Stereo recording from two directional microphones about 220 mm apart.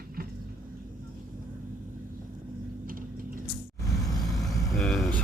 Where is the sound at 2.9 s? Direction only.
40° right (ahead or behind).